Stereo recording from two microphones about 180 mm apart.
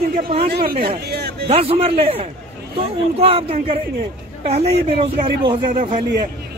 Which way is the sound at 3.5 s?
45° right (ahead or behind).